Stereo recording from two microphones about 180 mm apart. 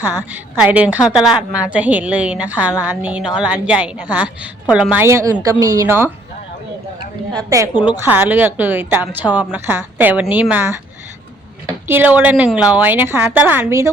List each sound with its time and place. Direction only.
0.3 s a woman's voice: 10° right (ahead or behind)
7.7 s a woman's voice: 25° left (ahead or behind)
8.0 s a woman's voice: 10° right (ahead or behind)
11.9 s a woman's voice: 10° right (ahead or behind)